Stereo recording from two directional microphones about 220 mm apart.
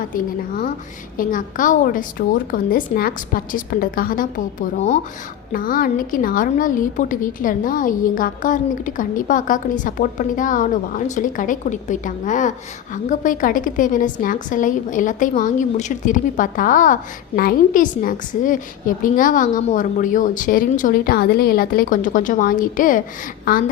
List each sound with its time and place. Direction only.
0.1 s a woman's voice: 40° left (ahead or behind)